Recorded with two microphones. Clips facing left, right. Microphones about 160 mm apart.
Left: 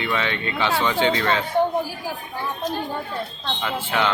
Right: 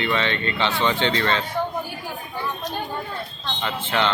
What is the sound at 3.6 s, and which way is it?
Speech, 10° left (ahead or behind).